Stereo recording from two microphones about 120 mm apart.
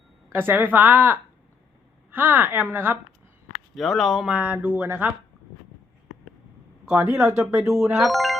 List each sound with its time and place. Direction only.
0.3 s a woman's voice: 15° right (ahead or behind)
3.8 s speech: centre (ahead or behind)
4.4 s a woman's voice: 15° right (ahead or behind)
6.8 s speech: 20° right (ahead or behind)
7.9 s speech: centre (ahead or behind)